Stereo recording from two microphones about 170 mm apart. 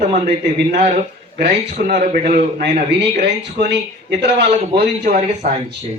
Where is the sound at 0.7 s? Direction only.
40° right (ahead or behind).